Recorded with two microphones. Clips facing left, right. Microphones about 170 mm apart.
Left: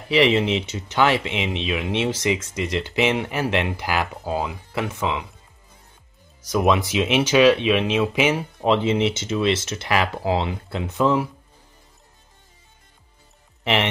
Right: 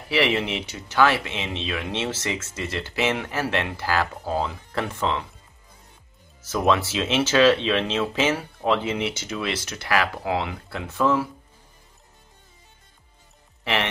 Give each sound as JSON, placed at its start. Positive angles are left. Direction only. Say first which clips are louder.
{"t": 0.1, "sound": "speech", "louder": "left 5 dB", "side_deg": 20}
{"t": 6.4, "sound": "speech", "louder": "left 2 dB", "side_deg": 15}